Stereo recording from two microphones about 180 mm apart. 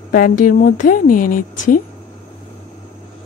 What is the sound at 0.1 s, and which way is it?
A woman's voice, 50° left (ahead or behind).